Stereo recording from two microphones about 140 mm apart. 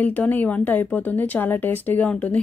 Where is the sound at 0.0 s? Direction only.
10° left (ahead or behind).